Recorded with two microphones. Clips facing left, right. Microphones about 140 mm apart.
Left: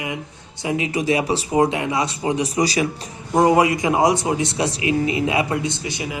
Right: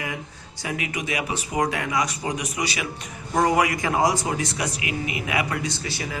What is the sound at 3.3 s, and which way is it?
A man's voice, 25° left (ahead or behind).